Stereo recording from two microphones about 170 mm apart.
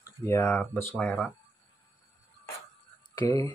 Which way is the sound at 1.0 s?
5° left (ahead or behind).